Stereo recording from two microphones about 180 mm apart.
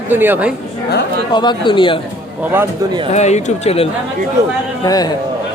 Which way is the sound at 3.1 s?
40° left (ahead or behind).